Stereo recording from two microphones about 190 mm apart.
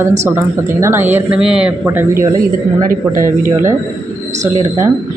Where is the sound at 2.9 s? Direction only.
45° right (ahead or behind).